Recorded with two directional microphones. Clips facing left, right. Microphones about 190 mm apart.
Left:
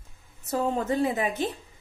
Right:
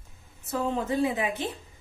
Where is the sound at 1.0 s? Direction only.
45° left (ahead or behind).